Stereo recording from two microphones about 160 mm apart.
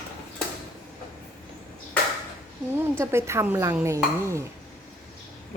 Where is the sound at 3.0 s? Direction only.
15° right (ahead or behind).